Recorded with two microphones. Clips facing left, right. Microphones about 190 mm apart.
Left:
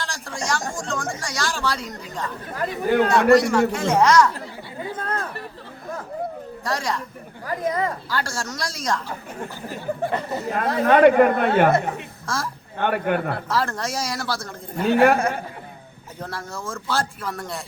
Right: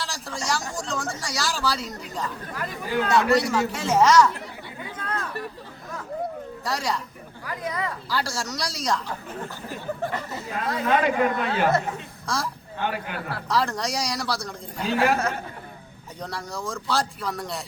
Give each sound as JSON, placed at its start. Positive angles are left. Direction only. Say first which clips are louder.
{"t": 0.0, "sound": "speech", "louder": "left 2 dB", "side_deg": 0}
{"t": 2.8, "sound": "speech", "louder": "left 7 dB", "side_deg": 55}
{"t": 3.1, "sound": "speech", "louder": "left 3 dB", "side_deg": 0}
{"t": 4.9, "sound": "chatter", "louder": "left 2 dB", "side_deg": 35}
{"t": 6.7, "sound": "speech", "louder": "left 2 dB", "side_deg": 0}
{"t": 7.4, "sound": "speech", "louder": "left 6 dB", "side_deg": 45}
{"t": 8.1, "sound": "speech", "louder": "left 1 dB", "side_deg": 0}
{"t": 10.4, "sound": "speech", "louder": "left 5 dB", "side_deg": 55}
{"t": 12.2, "sound": "a woman's voice", "louder": "even", "side_deg": 0}
{"t": 12.8, "sound": "speech", "louder": "left 8 dB", "side_deg": 55}
{"t": 13.5, "sound": "speech", "louder": "right 3 dB", "side_deg": 0}
{"t": 14.8, "sound": "speech", "louder": "left 6 dB", "side_deg": 55}
{"t": 16.2, "sound": "speech", "louder": "even", "side_deg": 0}